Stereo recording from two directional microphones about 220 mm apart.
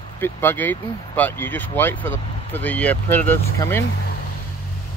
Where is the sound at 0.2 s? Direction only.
10° left (ahead or behind).